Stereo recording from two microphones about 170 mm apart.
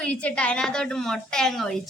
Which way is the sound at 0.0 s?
5° left (ahead or behind).